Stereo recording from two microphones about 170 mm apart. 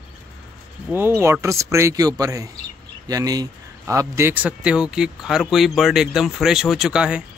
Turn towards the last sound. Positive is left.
turn(degrees=-5)  # may be behind; listen again after turning